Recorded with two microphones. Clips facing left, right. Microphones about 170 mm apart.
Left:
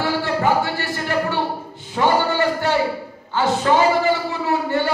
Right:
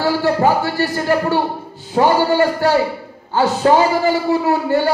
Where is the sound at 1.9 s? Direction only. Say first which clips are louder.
Right 4 dB; 40° right (ahead or behind).